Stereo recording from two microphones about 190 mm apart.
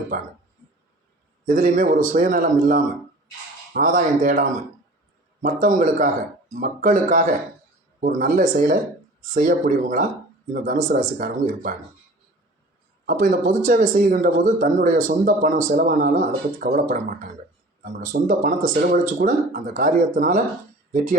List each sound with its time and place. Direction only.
1.5 s speech: 45° right (ahead or behind)
13.1 s speech: 50° right (ahead or behind)